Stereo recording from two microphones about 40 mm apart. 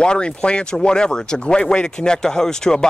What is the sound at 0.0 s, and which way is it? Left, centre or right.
Speech, left.